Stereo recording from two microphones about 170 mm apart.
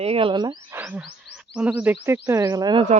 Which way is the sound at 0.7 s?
10° right (ahead or behind).